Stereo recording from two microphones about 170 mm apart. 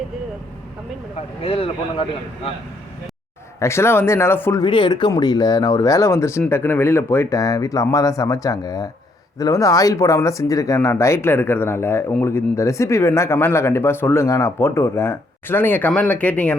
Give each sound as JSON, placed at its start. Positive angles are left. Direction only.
{"t": 1.1, "sound": "speech", "side_deg": 35}
{"t": 3.6, "sound": "speech", "side_deg": 15}
{"t": 4.6, "sound": "speech", "side_deg": 30}